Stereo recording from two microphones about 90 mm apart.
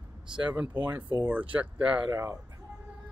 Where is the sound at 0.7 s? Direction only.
20° right (ahead or behind).